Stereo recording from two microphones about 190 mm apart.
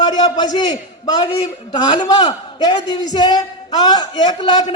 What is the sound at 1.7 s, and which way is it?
A man's voice, 20° left (ahead or behind).